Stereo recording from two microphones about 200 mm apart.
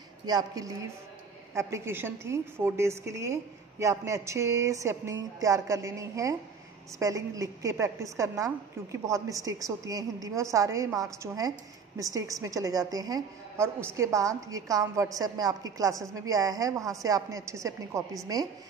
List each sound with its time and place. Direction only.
0.3 s a woman's voice: 20° right (ahead or behind)